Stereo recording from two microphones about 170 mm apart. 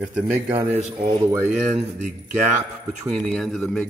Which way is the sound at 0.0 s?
10° right (ahead or behind).